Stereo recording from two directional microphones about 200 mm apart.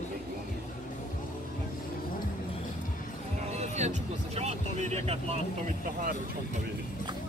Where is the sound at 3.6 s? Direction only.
35° right (ahead or behind).